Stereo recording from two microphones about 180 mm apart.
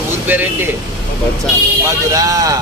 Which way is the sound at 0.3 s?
10° right (ahead or behind).